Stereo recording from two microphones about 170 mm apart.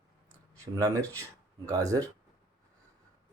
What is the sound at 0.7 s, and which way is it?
Speech, 20° right (ahead or behind).